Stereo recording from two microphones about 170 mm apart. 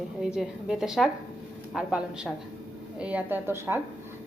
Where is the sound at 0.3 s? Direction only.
5° right (ahead or behind).